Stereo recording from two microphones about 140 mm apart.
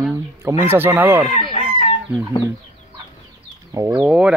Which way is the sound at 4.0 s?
5° right (ahead or behind).